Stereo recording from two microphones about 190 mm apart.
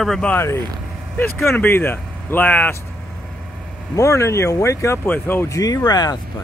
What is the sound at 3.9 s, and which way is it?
Speech, 15° left (ahead or behind).